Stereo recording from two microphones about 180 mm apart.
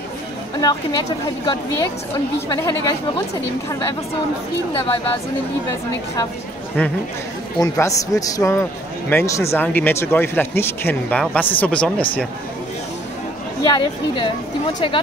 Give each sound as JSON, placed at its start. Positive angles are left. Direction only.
{"t": 0.6, "sound": "speech", "side_deg": 20}
{"t": 7.6, "sound": "speech", "side_deg": 20}
{"t": 13.7, "sound": "speech", "side_deg": 25}